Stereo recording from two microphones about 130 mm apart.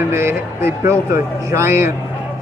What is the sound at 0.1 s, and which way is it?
A man's voice, 20° right (ahead or behind).